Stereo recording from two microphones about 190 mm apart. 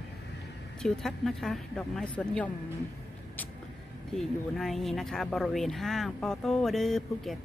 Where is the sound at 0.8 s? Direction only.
Centre (ahead or behind).